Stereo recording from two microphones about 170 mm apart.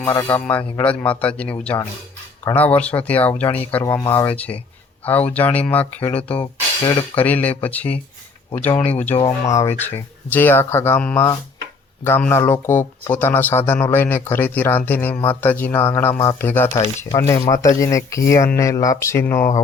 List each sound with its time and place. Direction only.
0.2 s a man's voice: 15° left (ahead or behind)
5.0 s a man's voice: 10° left (ahead or behind)
6.4 s speech: 25° left (ahead or behind)
7.2 s a man's voice: 10° left (ahead or behind)
9.1 s a man's voice: 20° left (ahead or behind)